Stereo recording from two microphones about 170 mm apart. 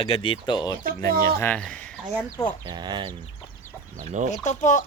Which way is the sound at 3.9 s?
45° right (ahead or behind).